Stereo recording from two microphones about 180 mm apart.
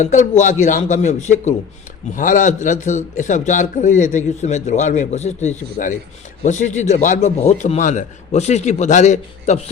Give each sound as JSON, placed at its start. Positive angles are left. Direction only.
{"t": 0.0, "sound": "a man's voice", "side_deg": 45}